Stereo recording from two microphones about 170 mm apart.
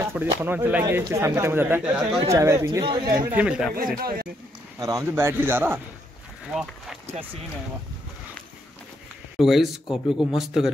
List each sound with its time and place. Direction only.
0.0 s speech: 10° right (ahead or behind)
2.8 s speech: 25° right (ahead or behind)
3.3 s speech: 5° right (ahead or behind)
3.7 s speech: 55° right (ahead or behind)
4.7 s speech: 20° right (ahead or behind)
6.5 s speech: centre (ahead or behind)
9.4 s speech: centre (ahead or behind)